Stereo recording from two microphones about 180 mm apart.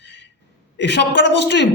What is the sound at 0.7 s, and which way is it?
Speech, 75° left (ahead or behind).